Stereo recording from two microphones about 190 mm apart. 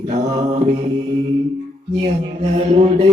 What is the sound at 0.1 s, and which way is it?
Mantra, 35° right (ahead or behind).